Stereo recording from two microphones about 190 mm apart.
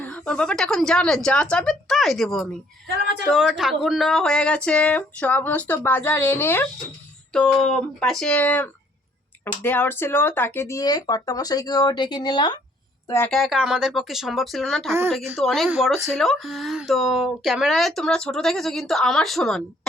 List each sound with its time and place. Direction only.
0.0 s speech: 5° left (ahead or behind); by 12.5 s 20° left (ahead or behind)
13.1 s a woman's voice: 10° left (ahead or behind)
13.3 s speech: centre (ahead or behind)